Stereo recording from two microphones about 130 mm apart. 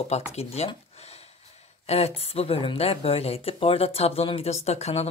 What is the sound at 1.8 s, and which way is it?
Speech, 50° left (ahead or behind).